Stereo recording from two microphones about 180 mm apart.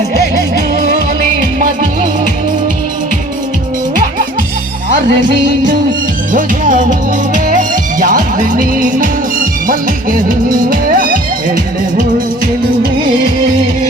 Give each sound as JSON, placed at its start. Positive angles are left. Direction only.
{"t": 6.3, "sound": "music", "side_deg": -45}